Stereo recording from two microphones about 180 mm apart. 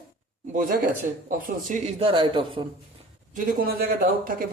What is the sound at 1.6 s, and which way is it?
Speech, 40° right (ahead or behind).